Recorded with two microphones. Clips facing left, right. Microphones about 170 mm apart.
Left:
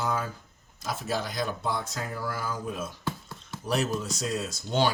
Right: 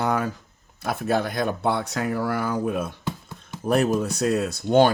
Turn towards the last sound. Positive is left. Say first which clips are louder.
# right 9 dB
turn(degrees=-55)  # may be behind; listen again after turning